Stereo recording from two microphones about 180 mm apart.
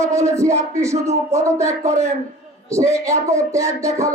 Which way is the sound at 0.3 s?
15° right (ahead or behind).